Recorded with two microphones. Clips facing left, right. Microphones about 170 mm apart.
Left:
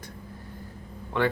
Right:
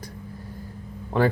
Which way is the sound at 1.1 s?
35° right (ahead or behind).